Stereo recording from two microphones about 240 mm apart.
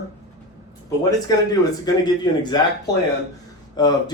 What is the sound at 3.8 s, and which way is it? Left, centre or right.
Speech, centre.